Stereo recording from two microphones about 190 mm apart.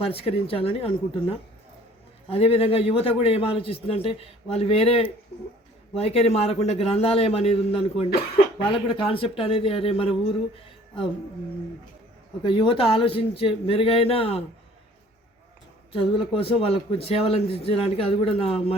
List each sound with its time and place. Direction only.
0.0 s a man's voice: 30° left (ahead or behind)
12.4 s speech: 25° left (ahead or behind)
15.9 s a man's voice: 30° left (ahead or behind)